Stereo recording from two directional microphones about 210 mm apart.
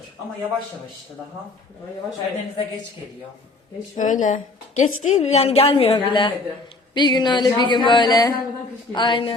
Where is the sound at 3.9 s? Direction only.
35° left (ahead or behind).